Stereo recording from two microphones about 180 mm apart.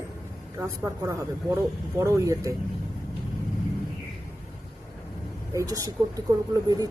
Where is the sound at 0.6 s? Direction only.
15° right (ahead or behind).